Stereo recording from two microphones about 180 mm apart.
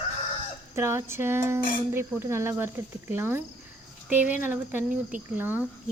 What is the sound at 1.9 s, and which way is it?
Speech, 15° right (ahead or behind).